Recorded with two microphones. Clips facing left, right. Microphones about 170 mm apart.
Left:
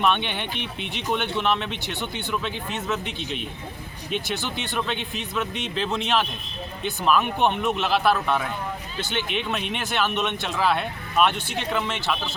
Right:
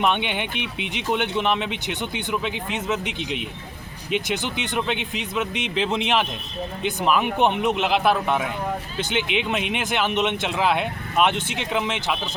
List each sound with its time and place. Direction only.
0.0 s speech: 15° right (ahead or behind)